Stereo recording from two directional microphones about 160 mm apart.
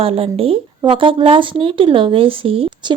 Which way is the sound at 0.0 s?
35° right (ahead or behind).